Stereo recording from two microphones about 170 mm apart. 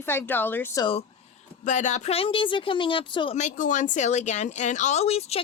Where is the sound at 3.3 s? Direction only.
45° left (ahead or behind).